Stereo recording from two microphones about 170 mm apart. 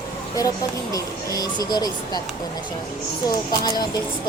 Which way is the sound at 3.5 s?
25° left (ahead or behind).